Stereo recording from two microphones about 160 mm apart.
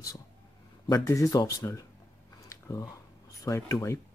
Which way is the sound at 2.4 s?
20° left (ahead or behind).